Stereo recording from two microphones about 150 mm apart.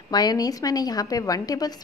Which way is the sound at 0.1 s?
25° left (ahead or behind).